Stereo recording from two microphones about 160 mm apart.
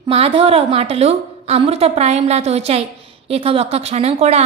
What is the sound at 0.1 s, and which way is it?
A woman's voice, 35° right (ahead or behind).